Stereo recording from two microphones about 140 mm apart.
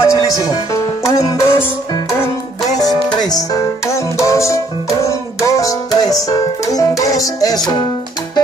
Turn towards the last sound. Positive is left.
turn(degrees=25)  # may be behind; listen again after turning